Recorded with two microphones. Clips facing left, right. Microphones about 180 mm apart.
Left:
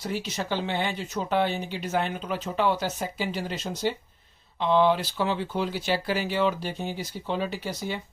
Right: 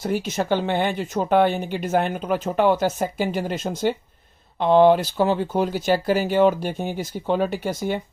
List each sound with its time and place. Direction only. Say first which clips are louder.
0.0 s speech: right 7 dB; 50° right (ahead or behind)